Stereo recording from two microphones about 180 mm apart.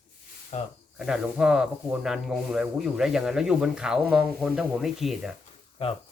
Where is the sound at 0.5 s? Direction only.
40° left (ahead or behind).